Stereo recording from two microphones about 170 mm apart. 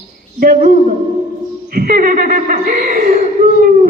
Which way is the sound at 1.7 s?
55° right (ahead or behind).